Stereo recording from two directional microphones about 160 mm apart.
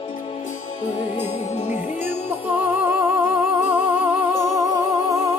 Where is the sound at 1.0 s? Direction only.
45° left (ahead or behind).